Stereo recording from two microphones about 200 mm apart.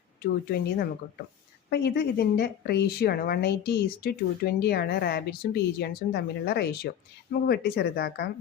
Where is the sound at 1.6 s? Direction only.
50° left (ahead or behind).